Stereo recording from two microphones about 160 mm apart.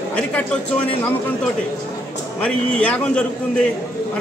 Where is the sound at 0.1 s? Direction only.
10° left (ahead or behind).